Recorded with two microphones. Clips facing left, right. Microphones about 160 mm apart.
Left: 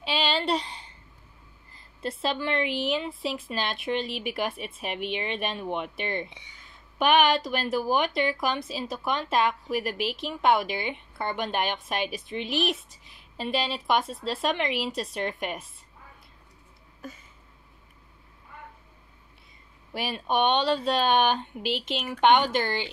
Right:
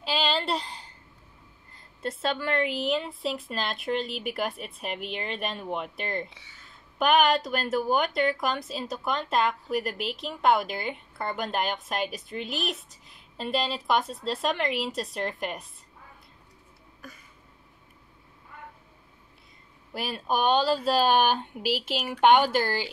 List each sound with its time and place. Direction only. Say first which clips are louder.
0.0 s a sound: even; centre (ahead or behind)
1.7 s a woman's voice: even; centre (ahead or behind)
6.3 s speech: left 3 dB; 20° left (ahead or behind)
7.0 s a woman's voice: even; centre (ahead or behind)
19.9 s a woman's voice: left 1 dB; centre (ahead or behind)